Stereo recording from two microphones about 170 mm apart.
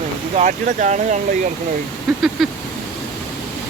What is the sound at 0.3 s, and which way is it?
Speech, 45° right (ahead or behind).